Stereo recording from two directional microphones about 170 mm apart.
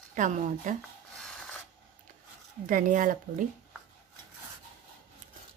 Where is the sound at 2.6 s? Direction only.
55° right (ahead or behind).